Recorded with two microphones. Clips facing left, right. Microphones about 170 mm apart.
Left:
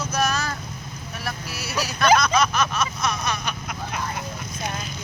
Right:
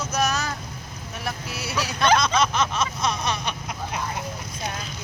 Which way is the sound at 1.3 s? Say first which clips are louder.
Right 1 dB; 25° right (ahead or behind).